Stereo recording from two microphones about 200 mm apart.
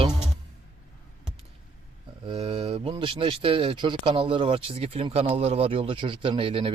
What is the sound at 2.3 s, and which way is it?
Speech, 30° right (ahead or behind).